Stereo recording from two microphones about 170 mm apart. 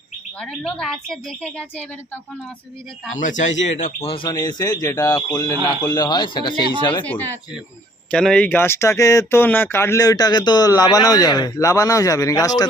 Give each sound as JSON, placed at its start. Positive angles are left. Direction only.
{"t": 0.3, "sound": "a woman's voice", "side_deg": 5}
{"t": 3.2, "sound": "speech", "side_deg": 45}
{"t": 4.1, "sound": "speech", "side_deg": 25}
{"t": 7.0, "sound": "speech", "side_deg": 10}